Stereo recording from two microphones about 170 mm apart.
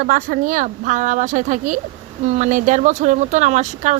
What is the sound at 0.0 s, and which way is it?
Speech, 55° right (ahead or behind).